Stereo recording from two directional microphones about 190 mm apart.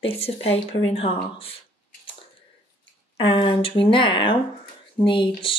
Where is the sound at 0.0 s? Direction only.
30° left (ahead or behind).